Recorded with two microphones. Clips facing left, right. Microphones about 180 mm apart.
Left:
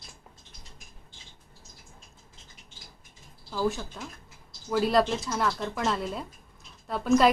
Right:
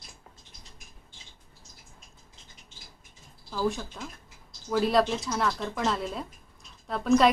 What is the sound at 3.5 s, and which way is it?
A woman's voice, centre (ahead or behind).